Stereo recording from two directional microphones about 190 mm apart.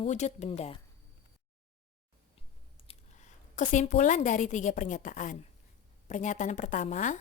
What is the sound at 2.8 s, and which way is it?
A woman's voice, 40° left (ahead or behind).